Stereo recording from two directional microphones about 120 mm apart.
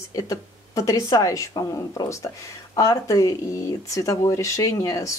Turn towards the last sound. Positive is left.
turn(degrees=30)  # may be behind; listen again after turning